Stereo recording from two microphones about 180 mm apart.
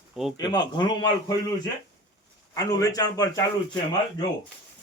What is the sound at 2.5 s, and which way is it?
Speech, 20° left (ahead or behind).